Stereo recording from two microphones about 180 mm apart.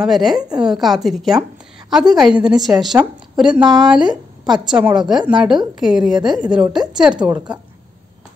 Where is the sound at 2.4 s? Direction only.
Centre (ahead or behind).